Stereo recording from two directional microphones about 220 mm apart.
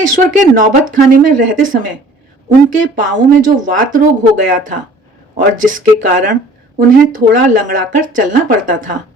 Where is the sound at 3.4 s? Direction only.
35° right (ahead or behind).